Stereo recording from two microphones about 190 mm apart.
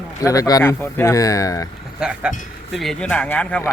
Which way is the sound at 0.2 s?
15° left (ahead or behind).